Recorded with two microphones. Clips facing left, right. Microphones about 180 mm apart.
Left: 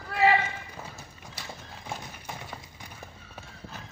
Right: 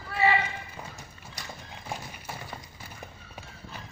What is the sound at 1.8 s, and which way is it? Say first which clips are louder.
Horse: even; 10° right (ahead or behind).